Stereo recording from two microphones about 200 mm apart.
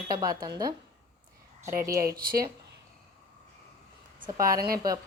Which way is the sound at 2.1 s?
50° right (ahead or behind).